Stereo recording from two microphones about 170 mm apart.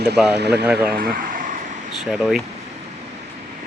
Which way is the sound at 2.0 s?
5° right (ahead or behind).